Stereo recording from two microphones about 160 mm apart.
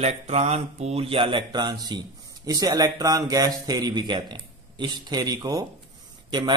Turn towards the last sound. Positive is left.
turn(degrees=-25)  # may be behind; listen again after turning